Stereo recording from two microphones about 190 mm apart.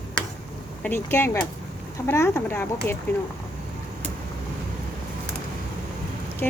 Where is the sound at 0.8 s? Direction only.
10° left (ahead or behind).